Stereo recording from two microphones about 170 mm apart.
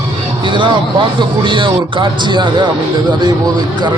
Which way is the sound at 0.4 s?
30° right (ahead or behind).